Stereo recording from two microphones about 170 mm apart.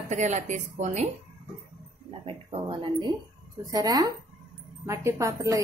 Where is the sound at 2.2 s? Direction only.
30° right (ahead or behind).